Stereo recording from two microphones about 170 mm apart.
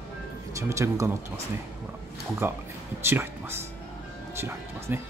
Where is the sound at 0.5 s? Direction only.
15° right (ahead or behind).